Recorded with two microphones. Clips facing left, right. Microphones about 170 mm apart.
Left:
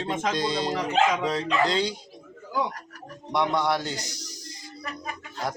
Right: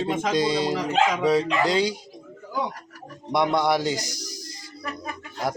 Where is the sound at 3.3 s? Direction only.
10° right (ahead or behind).